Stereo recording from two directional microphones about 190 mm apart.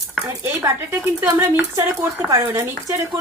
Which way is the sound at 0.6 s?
10° right (ahead or behind).